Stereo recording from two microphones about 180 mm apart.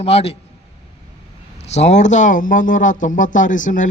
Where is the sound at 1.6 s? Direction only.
35° left (ahead or behind).